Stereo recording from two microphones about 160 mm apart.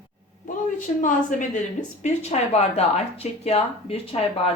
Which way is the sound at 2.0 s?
45° left (ahead or behind).